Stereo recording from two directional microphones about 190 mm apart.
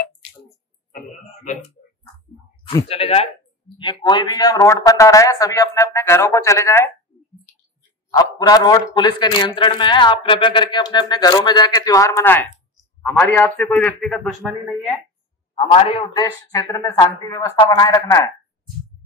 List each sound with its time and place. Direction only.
0.9 s a sound: 40° left (ahead or behind)
2.6 s speech: 30° left (ahead or behind)
8.1 s a man's voice: 20° left (ahead or behind); by 14.8 s centre (ahead or behind)
15.7 s speech: 30° left (ahead or behind)
16.2 s a man's voice: 15° left (ahead or behind)